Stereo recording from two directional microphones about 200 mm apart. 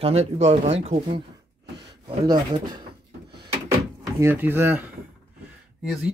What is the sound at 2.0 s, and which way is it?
Speech, 20° right (ahead or behind).